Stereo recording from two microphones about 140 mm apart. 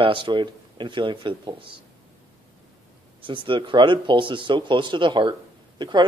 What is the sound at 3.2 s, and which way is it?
A man's voice, 35° right (ahead or behind).